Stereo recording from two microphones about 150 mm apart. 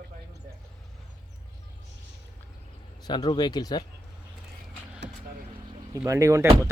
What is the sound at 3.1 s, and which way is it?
Speech, 30° left (ahead or behind).